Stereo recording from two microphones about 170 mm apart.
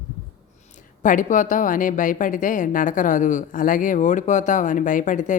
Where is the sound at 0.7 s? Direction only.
50° left (ahead or behind).